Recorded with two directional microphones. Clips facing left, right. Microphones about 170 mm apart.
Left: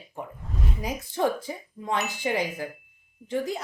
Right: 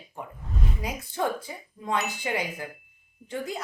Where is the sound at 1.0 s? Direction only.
25° left (ahead or behind).